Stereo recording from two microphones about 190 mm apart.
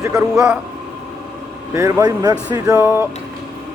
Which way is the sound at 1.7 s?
15° right (ahead or behind).